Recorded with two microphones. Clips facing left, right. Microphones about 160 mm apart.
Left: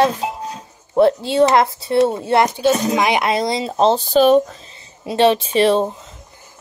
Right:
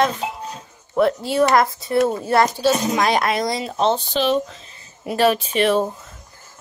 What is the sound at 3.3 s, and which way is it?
Speech, 25° left (ahead or behind).